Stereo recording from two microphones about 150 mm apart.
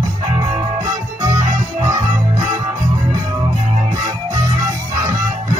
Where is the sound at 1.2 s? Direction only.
25° right (ahead or behind).